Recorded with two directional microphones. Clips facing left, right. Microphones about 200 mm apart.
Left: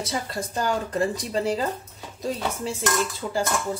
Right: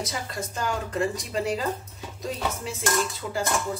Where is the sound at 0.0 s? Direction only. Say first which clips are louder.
Left 3 dB; 35° left (ahead or behind).